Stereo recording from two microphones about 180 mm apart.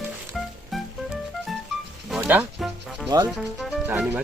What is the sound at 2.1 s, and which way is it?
Music, 10° right (ahead or behind).